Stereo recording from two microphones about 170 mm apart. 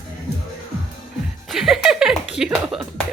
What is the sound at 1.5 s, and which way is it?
Speech, centre (ahead or behind).